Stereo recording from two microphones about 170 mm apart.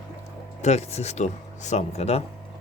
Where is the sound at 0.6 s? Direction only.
40° left (ahead or behind).